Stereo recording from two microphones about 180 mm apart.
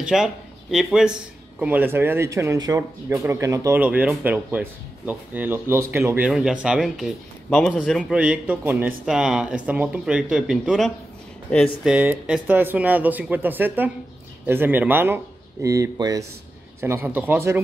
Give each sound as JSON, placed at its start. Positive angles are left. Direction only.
{"t": 0.0, "sound": "speech", "side_deg": -5}